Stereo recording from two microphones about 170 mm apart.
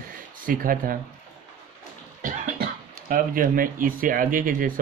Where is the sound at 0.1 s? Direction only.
55° right (ahead or behind).